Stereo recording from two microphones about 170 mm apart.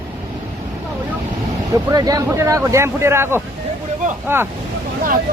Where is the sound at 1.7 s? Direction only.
20° right (ahead or behind).